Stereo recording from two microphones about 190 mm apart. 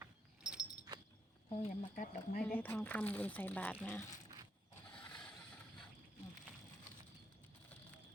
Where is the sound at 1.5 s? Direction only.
30° left (ahead or behind).